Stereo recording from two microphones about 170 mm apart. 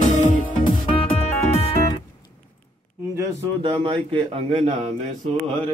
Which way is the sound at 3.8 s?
30° right (ahead or behind).